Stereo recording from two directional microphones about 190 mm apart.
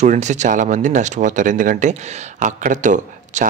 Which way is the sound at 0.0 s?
40° right (ahead or behind).